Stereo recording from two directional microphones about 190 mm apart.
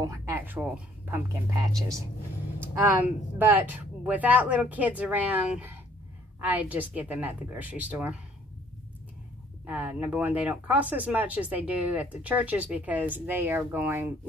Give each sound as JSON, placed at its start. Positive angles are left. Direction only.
{"t": 0.0, "sound": "speech", "side_deg": -15}
{"t": 2.6, "sound": "speech", "side_deg": -10}
{"t": 9.7, "sound": "speech", "side_deg": -10}